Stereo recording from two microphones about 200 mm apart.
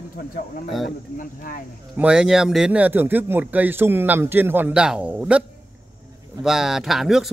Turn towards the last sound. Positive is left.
turn(degrees=0)  # may be behind; listen again after turning